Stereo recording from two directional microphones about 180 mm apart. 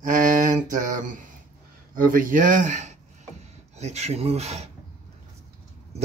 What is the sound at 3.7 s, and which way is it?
Speech, 40° right (ahead or behind).